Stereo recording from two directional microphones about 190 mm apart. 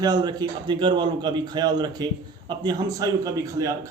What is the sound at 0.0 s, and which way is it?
A man's voice, 20° right (ahead or behind).